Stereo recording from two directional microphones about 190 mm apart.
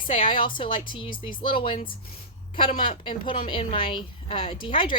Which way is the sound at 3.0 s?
25° left (ahead or behind).